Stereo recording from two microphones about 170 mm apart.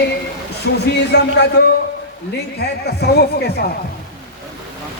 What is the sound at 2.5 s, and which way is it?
Speech, 75° left (ahead or behind).